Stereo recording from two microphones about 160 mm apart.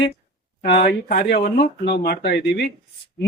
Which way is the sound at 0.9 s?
60° left (ahead or behind).